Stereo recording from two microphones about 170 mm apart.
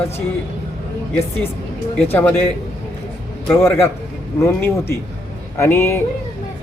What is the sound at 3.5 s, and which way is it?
Speech, 15° left (ahead or behind).